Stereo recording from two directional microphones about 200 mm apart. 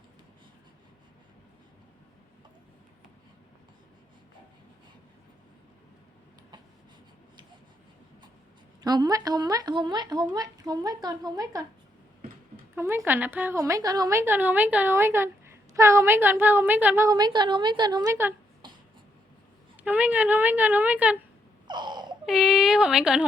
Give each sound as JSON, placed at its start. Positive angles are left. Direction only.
{"t": 8.8, "sound": "speech", "side_deg": -20}
{"t": 12.7, "sound": "speech", "side_deg": -15}
{"t": 18.6, "sound": "a sound", "side_deg": -25}
{"t": 19.8, "sound": "speech", "side_deg": -10}
{"t": 21.7, "sound": "baby cry", "side_deg": -20}
{"t": 22.3, "sound": "speech", "side_deg": 0}